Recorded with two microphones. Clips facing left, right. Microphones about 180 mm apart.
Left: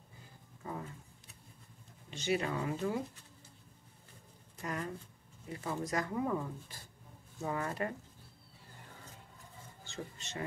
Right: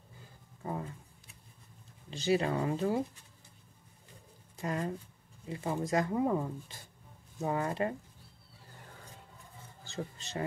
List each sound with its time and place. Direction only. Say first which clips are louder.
2.0 s speech: right 4 dB; 35° right (ahead or behind)
4.6 s speech: right 5 dB; 25° right (ahead or behind)
9.8 s speech: right 5 dB; 35° right (ahead or behind)